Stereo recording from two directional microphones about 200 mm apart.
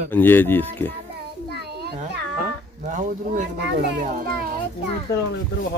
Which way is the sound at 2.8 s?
40° right (ahead or behind).